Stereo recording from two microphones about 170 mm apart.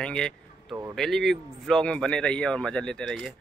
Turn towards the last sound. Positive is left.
turn(degrees=0)  # may be behind; listen again after turning